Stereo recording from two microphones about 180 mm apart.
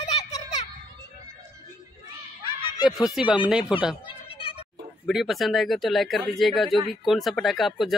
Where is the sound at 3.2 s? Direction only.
5° right (ahead or behind).